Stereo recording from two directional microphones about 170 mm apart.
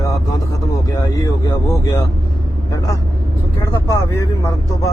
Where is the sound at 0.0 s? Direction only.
20° left (ahead or behind).